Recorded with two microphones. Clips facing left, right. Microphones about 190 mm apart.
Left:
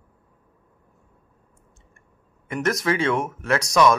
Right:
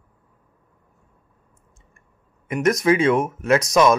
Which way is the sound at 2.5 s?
20° right (ahead or behind).